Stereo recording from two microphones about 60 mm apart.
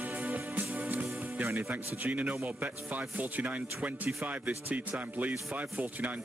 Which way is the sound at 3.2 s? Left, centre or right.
Right.